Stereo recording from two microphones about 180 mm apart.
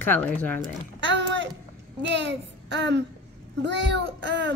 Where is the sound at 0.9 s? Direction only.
85° right.